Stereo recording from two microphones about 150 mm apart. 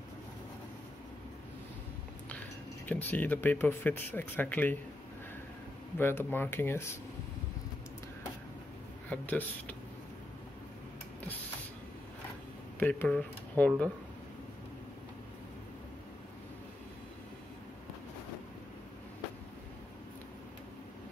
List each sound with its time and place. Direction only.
2.9 s speech: 10° left (ahead or behind)
5.9 s speech: 15° left (ahead or behind)
9.1 s speech: 10° left (ahead or behind)
12.7 s speech: 10° left (ahead or behind)